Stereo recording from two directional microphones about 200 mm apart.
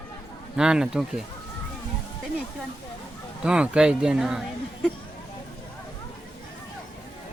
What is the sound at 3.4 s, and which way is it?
Speech, 5° right (ahead or behind).